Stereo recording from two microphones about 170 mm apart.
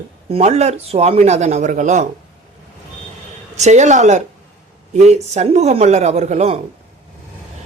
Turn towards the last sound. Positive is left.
turn(degrees=-40)  # may be behind; listen again after turning